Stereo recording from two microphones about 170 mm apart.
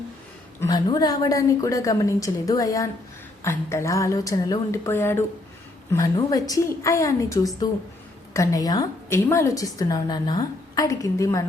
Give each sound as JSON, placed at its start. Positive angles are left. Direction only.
{"t": 0.6, "sound": "a woman's voice", "side_deg": 25}